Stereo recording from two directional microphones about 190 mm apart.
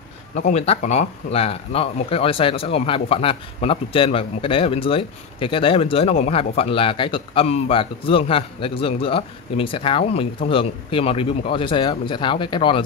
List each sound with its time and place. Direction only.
0.4 s speech: 35° left (ahead or behind)